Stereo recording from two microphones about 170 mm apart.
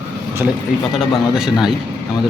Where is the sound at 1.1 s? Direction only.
Centre (ahead or behind).